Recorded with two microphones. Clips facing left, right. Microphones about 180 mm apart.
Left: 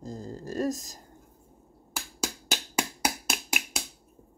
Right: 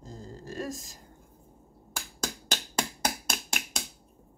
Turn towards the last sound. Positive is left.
turn(degrees=5)  # may be behind; listen again after turning